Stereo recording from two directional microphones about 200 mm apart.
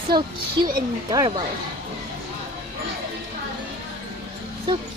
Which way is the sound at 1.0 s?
25° right (ahead or behind).